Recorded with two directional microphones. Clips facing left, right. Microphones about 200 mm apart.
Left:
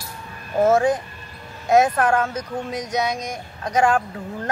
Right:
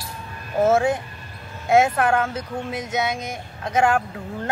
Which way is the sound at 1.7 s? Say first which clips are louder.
Left 1 dB; 5° right (ahead or behind).